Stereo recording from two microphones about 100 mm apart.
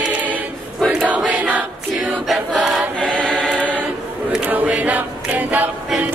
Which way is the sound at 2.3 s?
Centre (ahead or behind).